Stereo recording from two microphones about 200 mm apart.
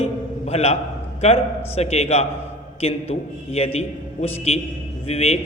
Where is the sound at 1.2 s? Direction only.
30° left (ahead or behind).